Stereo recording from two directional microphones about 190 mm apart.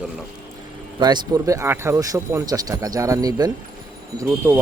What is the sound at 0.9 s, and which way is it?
Speech, 20° right (ahead or behind).